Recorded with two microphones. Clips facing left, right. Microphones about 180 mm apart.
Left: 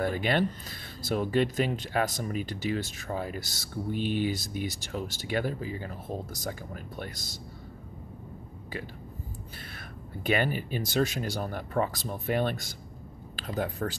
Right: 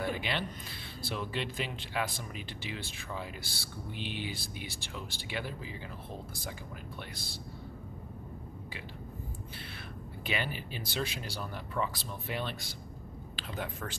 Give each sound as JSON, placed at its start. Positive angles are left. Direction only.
{"t": 0.0, "sound": "speech", "side_deg": 45}
{"t": 10.2, "sound": "speech", "side_deg": 50}